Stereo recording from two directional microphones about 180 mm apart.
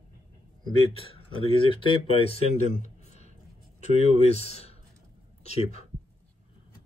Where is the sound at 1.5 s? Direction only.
30° left (ahead or behind).